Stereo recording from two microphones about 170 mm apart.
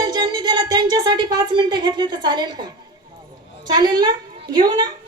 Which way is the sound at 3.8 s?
25° right (ahead or behind).